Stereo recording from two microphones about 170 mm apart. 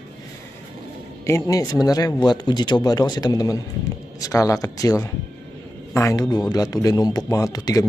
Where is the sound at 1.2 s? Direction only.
15° left (ahead or behind).